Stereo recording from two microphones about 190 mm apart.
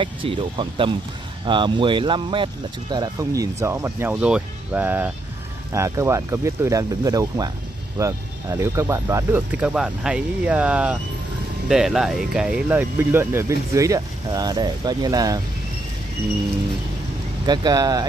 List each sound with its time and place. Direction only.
0.0 s speech: 25° right (ahead or behind)
17.5 s speech: 20° right (ahead or behind)